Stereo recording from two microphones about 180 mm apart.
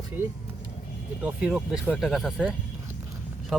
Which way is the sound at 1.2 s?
5° right (ahead or behind).